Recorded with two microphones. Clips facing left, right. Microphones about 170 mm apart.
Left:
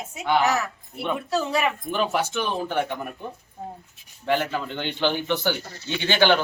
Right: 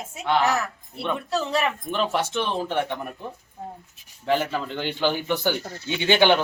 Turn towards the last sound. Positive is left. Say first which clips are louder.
# right 1 dB
turn(degrees=-15)  # may be behind; listen again after turning